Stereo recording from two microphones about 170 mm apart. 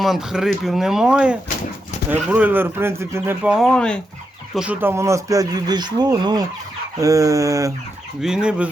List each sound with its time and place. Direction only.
0.0 s speech: centre (ahead or behind)
3.8 s speech: 5° left (ahead or behind)
4.5 s speech: 10° right (ahead or behind)
8.2 s speech: 5° right (ahead or behind)